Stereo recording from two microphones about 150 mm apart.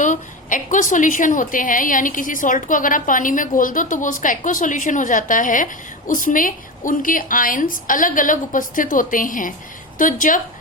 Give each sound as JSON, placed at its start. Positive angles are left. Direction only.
{"t": 0.0, "sound": "a woman's voice", "side_deg": 55}